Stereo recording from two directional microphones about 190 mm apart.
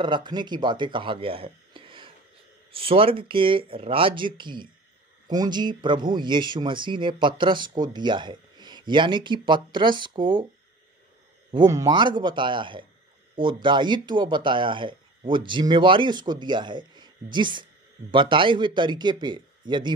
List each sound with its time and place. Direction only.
0.0 s speech: 25° right (ahead or behind)
11.5 s speech: 20° right (ahead or behind)